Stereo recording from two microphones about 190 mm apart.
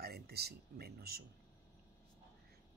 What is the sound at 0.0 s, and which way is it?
Speech, 55° right (ahead or behind).